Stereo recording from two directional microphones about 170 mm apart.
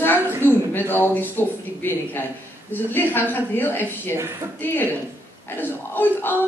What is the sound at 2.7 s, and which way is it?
A man's voice, 10° left (ahead or behind).